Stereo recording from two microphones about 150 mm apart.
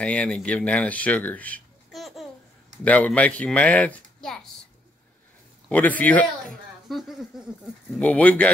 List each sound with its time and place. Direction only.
0.0 s speech: 10° left (ahead or behind)
1.9 s babbling: centre (ahead or behind)
2.8 s speech: 10° left (ahead or behind)
5.7 s speech: 10° left (ahead or behind)
6.9 s speech: centre (ahead or behind)
8.0 s speech: 10° left (ahead or behind)